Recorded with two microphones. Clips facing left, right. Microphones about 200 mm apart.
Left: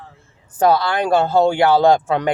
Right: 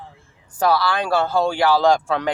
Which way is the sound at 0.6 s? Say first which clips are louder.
Left 3 dB; 20° left (ahead or behind).